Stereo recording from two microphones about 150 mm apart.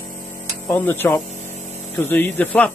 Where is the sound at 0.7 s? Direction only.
15° left (ahead or behind).